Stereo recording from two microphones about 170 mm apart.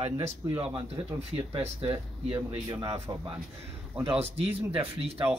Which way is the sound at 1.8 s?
30° right (ahead or behind).